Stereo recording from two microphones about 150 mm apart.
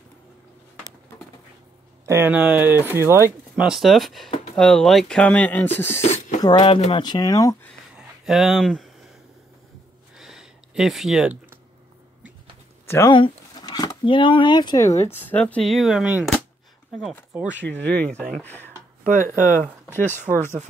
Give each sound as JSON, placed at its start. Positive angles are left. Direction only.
{"t": 2.0, "sound": "speech", "side_deg": -15}
{"t": 3.5, "sound": "speech", "side_deg": -5}
{"t": 6.4, "sound": "speech", "side_deg": 35}
{"t": 7.9, "sound": "a sound", "side_deg": -5}
{"t": 10.1, "sound": "a sound", "side_deg": -5}
{"t": 12.8, "sound": "speech", "side_deg": 15}
{"t": 13.1, "sound": "speech", "side_deg": 30}
{"t": 17.3, "sound": "speech", "side_deg": -5}
{"t": 19.1, "sound": "speech", "side_deg": 15}
{"t": 20.1, "sound": "speech", "side_deg": -55}